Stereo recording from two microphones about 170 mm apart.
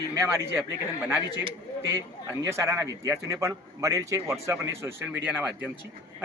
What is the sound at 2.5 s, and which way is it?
A man's voice, 15° right (ahead or behind).